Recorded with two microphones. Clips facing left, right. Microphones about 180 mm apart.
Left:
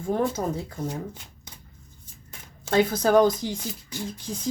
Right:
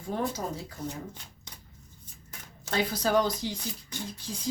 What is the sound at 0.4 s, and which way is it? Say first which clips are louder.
Speech: left 6 dB; 55° left (ahead or behind).